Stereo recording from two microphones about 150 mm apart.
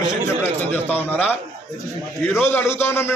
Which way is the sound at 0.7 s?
10° left (ahead or behind).